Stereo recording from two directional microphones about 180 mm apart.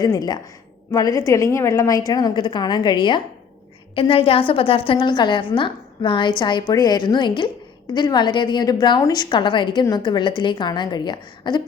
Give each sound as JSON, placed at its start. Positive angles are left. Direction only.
{"t": 0.0, "sound": "a woman's voice", "side_deg": 20}